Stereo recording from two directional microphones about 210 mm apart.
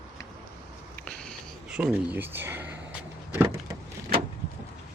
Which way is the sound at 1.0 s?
5° left (ahead or behind).